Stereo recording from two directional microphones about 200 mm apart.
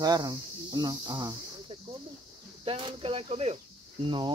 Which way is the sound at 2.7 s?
30° right (ahead or behind).